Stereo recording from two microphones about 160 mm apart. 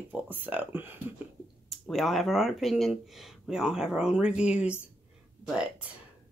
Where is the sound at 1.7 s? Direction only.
Centre (ahead or behind).